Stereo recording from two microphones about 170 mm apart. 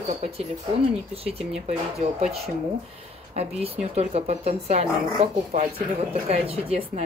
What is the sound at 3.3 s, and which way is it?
Speech, 40° right (ahead or behind).